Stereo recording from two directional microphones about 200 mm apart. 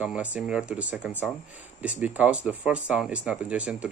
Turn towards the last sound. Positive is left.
turn(degrees=-5)  # may be behind; listen again after turning